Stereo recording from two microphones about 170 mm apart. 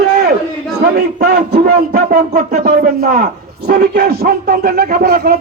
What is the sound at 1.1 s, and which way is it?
A man's voice, 60° right (ahead or behind).